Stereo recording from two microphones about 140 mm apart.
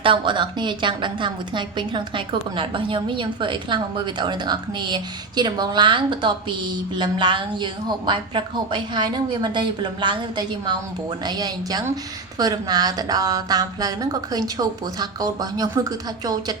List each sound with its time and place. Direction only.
0.0 s a woman's voice: 35° right (ahead or behind)